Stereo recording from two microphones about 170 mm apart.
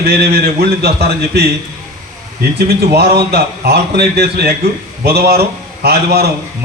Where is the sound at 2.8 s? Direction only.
70° right (ahead or behind).